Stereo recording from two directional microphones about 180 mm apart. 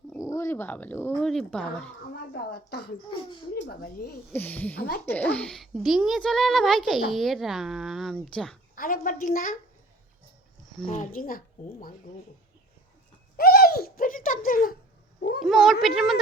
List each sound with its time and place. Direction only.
0.2 s speech: 15° left (ahead or behind)
2.3 s speech: 65° left (ahead or behind)
4.3 s speech: 10° left (ahead or behind)
4.8 s speech: 60° left (ahead or behind)
5.1 s a child's voice: 10° left (ahead or behind)
8.7 s speech: 50° left (ahead or behind)
10.8 s speech: 50° left (ahead or behind)
13.3 s a sound: 60° left (ahead or behind)
15.4 s a child's voice: centre (ahead or behind)